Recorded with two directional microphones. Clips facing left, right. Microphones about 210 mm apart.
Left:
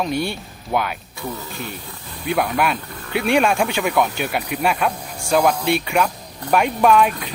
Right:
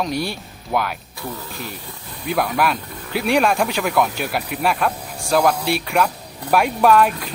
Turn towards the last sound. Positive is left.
turn(degrees=0)  # may be behind; listen again after turning